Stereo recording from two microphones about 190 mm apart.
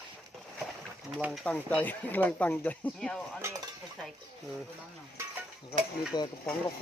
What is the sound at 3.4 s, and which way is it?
Cutlery, 15° right (ahead or behind).